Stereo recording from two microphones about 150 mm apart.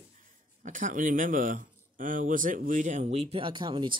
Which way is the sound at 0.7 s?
60° right (ahead or behind).